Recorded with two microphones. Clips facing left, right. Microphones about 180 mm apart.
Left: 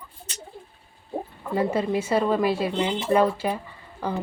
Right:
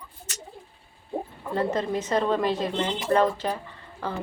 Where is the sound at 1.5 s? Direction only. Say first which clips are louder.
Left 2 dB; 10° left (ahead or behind).